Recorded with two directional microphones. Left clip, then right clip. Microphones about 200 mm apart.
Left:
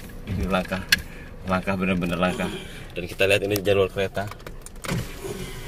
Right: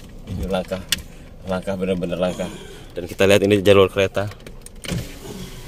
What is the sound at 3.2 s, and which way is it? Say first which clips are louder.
Speech: right 6 dB; 55° right (ahead or behind).